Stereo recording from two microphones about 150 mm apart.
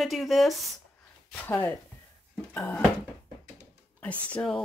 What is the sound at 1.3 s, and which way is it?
Speech, 15° left (ahead or behind).